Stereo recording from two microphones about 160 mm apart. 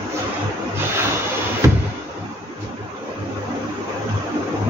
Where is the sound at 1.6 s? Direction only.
15° right (ahead or behind).